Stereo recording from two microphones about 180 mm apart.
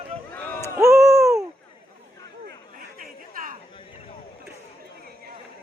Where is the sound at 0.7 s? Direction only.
15° right (ahead or behind).